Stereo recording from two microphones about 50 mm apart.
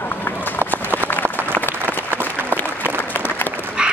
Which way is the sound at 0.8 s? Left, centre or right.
Right.